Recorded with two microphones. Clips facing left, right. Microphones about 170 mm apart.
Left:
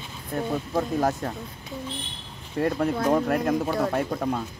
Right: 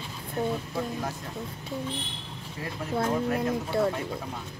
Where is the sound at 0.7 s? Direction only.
70° left (ahead or behind).